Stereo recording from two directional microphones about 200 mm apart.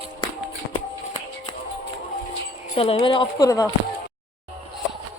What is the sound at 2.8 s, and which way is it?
Speech, 30° left (ahead or behind).